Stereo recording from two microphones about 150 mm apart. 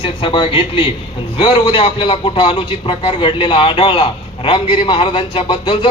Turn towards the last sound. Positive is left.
turn(degrees=30)  # may be behind; listen again after turning